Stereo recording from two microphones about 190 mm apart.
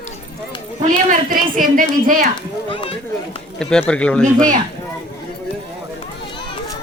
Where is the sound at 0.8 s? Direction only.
45° right (ahead or behind).